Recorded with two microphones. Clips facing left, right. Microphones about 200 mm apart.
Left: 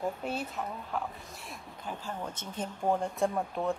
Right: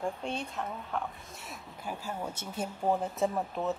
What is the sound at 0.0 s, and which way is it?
A woman's voice, 5° left (ahead or behind).